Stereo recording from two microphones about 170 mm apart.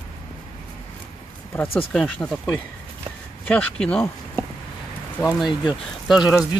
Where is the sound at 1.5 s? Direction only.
15° left (ahead or behind).